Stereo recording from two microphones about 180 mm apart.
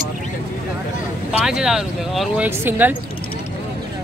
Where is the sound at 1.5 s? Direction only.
5° right (ahead or behind).